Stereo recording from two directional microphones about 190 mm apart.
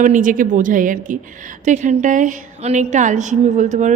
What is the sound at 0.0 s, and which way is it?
A woman's voice, 45° right (ahead or behind).